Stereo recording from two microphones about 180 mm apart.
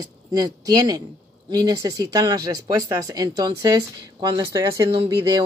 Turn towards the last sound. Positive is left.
turn(degrees=-20)  # may be behind; listen again after turning